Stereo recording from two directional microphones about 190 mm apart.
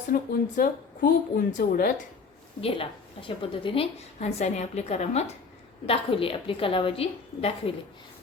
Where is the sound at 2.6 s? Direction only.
30° left (ahead or behind).